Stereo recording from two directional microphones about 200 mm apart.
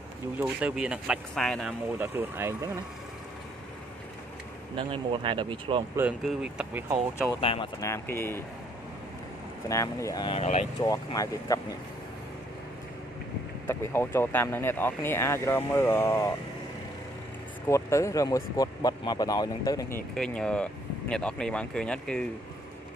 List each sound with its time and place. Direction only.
0.4 s speech: 5° right (ahead or behind)
2.0 s speech: 10° right (ahead or behind)
4.7 s speech: 25° right (ahead or behind)
5.9 s speech: 5° right (ahead or behind)
7.3 s speech: 25° left (ahead or behind)
7.8 s speech: 10° left (ahead or behind)
9.7 s speech: 15° left (ahead or behind)
10.4 s speech: 30° left (ahead or behind)
10.8 s speech: 20° left (ahead or behind)
13.7 s speech: 10° left (ahead or behind)
17.6 s speech: 15° left (ahead or behind)
20.2 s speech: 5° left (ahead or behind)